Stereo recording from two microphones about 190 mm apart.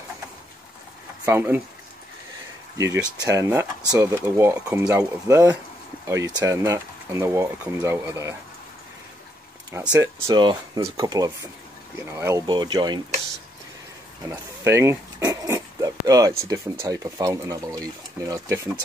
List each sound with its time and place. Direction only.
1.2 s speech: 10° right (ahead or behind)
3.3 s speech: 15° right (ahead or behind)
9.7 s speech: 15° right (ahead or behind)
14.3 s pig: 15° right (ahead or behind)
16.8 s speech: 20° right (ahead or behind)